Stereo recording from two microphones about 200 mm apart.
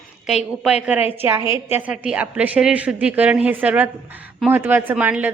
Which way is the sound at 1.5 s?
5° right (ahead or behind).